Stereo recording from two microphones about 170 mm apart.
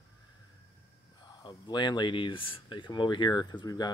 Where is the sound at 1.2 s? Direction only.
25° left (ahead or behind).